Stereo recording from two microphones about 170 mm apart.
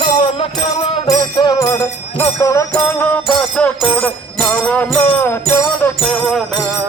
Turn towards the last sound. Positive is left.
turn(degrees=5)  # may be behind; listen again after turning